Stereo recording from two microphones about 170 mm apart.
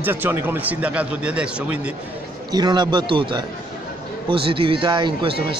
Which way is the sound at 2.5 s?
25° right (ahead or behind).